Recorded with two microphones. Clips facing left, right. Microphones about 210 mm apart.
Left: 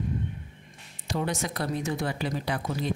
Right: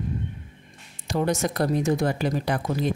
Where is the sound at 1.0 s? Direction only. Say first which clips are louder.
Right 6 dB; 45° right (ahead or behind).